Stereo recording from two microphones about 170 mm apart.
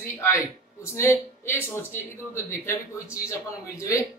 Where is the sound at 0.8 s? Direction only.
15° left (ahead or behind).